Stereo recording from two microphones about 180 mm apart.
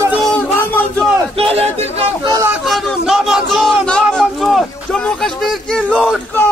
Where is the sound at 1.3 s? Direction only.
35° right (ahead or behind).